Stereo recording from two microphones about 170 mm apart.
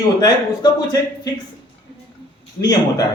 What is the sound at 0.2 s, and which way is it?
Speech, 20° left (ahead or behind).